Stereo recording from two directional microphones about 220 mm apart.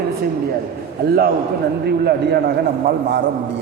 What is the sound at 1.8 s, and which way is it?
Speech, 45° right (ahead or behind).